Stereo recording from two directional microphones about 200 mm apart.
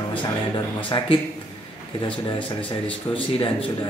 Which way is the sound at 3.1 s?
25° left (ahead or behind).